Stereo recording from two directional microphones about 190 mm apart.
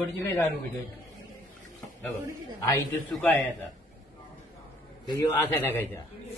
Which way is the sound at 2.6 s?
10° left (ahead or behind).